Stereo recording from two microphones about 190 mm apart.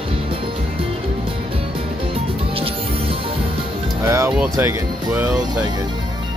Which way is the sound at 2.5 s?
30° right (ahead or behind).